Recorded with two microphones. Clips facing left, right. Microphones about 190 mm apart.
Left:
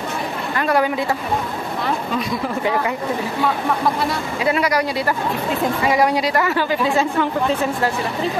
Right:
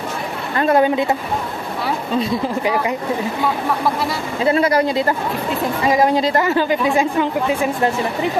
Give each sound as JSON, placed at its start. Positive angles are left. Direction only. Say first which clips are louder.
{"t": 0.6, "sound": "speech", "louder": "right 4 dB", "side_deg": -25}
{"t": 2.1, "sound": "speech", "louder": "right 3 dB", "side_deg": -25}
{"t": 4.4, "sound": "speech", "louder": "right 4 dB", "side_deg": -30}